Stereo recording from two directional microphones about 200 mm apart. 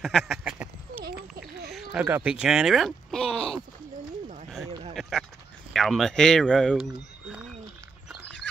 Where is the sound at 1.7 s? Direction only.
5° right (ahead or behind).